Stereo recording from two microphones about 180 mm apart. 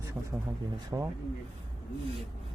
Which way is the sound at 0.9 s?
15° right (ahead or behind).